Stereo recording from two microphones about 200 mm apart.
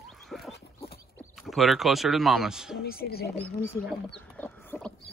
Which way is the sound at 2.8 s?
50° left (ahead or behind).